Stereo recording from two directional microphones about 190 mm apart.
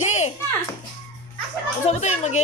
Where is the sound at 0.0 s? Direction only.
35° left (ahead or behind).